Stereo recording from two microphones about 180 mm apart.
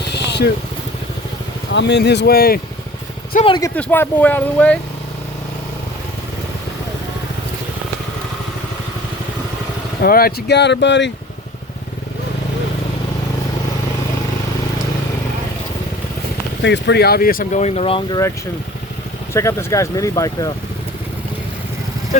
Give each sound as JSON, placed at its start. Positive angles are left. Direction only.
{"t": 0.0, "sound": "vehicle", "side_deg": 70}
{"t": 1.7, "sound": "speech", "side_deg": 75}
{"t": 3.4, "sound": "speech", "side_deg": 25}
{"t": 3.8, "sound": "speech", "side_deg": 10}
{"t": 10.0, "sound": "speech", "side_deg": 55}
{"t": 16.6, "sound": "speech", "side_deg": 75}
{"t": 19.3, "sound": "speech", "side_deg": 15}